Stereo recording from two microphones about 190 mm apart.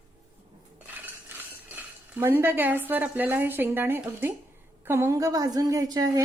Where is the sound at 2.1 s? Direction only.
10° right (ahead or behind).